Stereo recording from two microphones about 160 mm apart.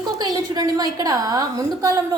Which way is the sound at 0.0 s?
25° right (ahead or behind).